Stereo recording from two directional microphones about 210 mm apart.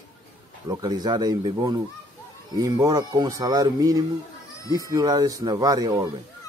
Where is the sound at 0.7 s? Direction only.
20° right (ahead or behind).